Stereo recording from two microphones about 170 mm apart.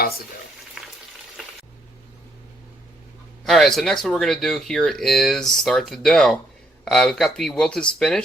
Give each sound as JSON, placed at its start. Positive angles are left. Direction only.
{"t": 3.4, "sound": "speech", "side_deg": 0}